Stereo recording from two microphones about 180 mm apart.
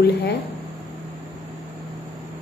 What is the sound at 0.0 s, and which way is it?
Speech, 65° left (ahead or behind).